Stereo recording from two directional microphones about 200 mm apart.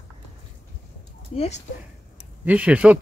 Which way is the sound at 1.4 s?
35° left (ahead or behind).